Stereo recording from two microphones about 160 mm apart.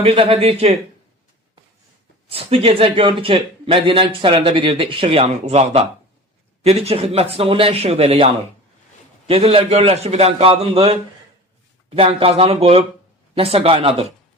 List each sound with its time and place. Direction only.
0.0 s a man's voice: 35° right (ahead or behind)
2.3 s a man's voice: 35° right (ahead or behind)
11.9 s a man's voice: 35° right (ahead or behind)